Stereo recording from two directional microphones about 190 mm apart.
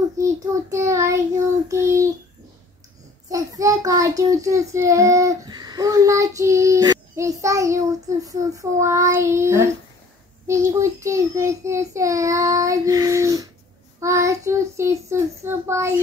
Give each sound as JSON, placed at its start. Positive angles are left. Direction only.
{"t": 0.2, "sound": "child singing", "side_deg": -15}
{"t": 3.3, "sound": "child singing", "side_deg": -15}